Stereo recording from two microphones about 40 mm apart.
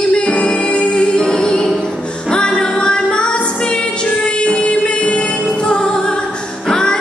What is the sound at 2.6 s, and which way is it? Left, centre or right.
Music, left.